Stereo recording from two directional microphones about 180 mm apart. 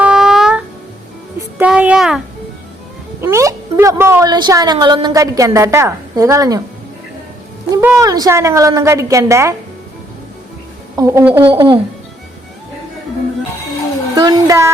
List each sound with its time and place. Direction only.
0.0 s music: 5° right (ahead or behind)
1.4 s a sound: 10° right (ahead or behind)
3.2 s a woman's voice: 15° right (ahead or behind)
7.8 s a woman's voice: 15° right (ahead or behind)
10.9 s a woman's voice: 15° right (ahead or behind)
11.4 s speech: 25° right (ahead or behind)
14.2 s speech: 20° right (ahead or behind)